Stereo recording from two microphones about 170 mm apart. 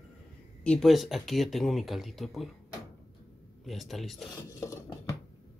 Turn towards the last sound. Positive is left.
turn(degrees=20)  # may be behind; listen again after turning